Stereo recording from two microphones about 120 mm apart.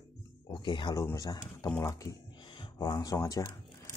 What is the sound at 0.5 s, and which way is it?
Speech, 40° left (ahead or behind).